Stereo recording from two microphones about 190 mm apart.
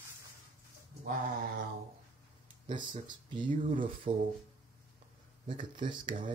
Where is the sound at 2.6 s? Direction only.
25° right (ahead or behind).